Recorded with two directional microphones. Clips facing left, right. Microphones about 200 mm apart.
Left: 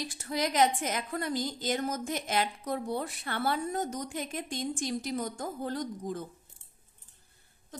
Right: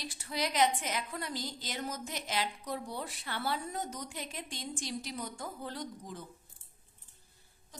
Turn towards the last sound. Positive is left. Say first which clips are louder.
# left 7 dB
turn(degrees=50)  # may be behind; listen again after turning